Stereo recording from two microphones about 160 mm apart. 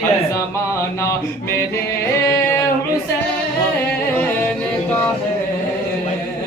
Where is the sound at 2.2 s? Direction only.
20° left (ahead or behind).